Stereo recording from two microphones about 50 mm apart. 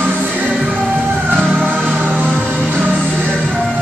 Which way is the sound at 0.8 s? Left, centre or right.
Right.